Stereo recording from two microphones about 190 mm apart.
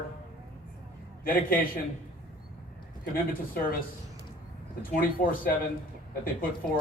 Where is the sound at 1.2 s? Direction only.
50° left (ahead or behind).